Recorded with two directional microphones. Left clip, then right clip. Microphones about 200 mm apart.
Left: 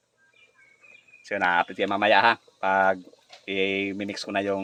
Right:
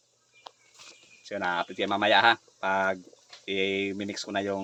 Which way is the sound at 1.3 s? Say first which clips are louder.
Left 6 dB; 10° left (ahead or behind).